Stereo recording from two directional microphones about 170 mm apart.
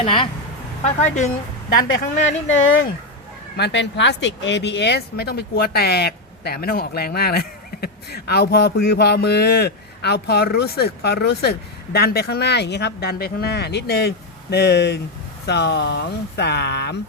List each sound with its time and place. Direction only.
0.0 s speech: 30° left (ahead or behind)
0.9 s speech: 45° left (ahead or behind)
1.7 s speech: 55° left (ahead or behind)
3.6 s speech: 90° left